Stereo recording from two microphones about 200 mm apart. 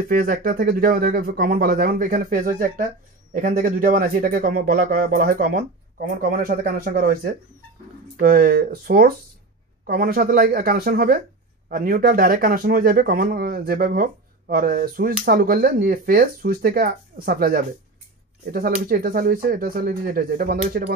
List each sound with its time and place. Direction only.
0.1 s speech: 45° right (ahead or behind)